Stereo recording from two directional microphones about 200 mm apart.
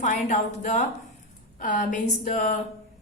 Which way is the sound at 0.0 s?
40° left (ahead or behind).